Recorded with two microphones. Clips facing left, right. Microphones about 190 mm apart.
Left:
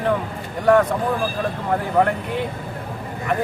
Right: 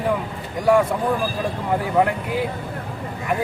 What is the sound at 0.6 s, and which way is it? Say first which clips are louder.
Speech: left 1 dB; 10° right (ahead or behind).